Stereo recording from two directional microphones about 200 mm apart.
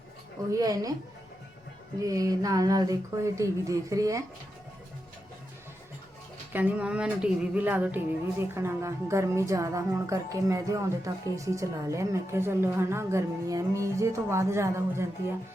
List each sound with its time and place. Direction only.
0.5 s speech: 20° right (ahead or behind)
2.0 s music: 15° right (ahead or behind)
6.5 s music: 10° right (ahead or behind)